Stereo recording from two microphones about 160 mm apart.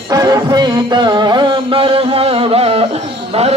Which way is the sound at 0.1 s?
20° right (ahead or behind).